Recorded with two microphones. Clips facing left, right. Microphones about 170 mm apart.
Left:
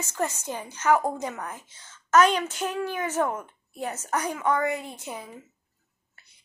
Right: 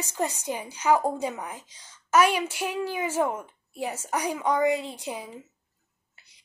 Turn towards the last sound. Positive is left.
turn(degrees=-15)  # may be behind; listen again after turning